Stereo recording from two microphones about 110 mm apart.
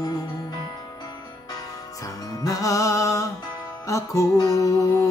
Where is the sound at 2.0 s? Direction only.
35° left (ahead or behind).